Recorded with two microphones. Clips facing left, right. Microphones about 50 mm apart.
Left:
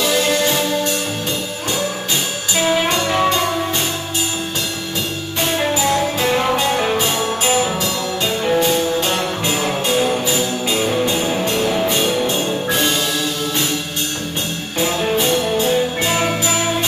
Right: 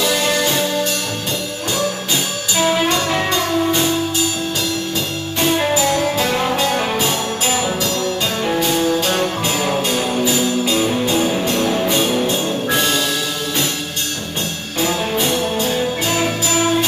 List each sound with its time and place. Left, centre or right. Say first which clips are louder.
0.0 s music: left 1 dB; centre
2.5 s music: even; centre
2.9 s music: left 1 dB; centre
5.9 s music: even; centre
8.4 s music: left 4 dB; centre
9.0 s music: right 1 dB; centre
12.3 s music: even; left
15.0 s music: left 1 dB; centre
15.6 s music: left 2 dB; left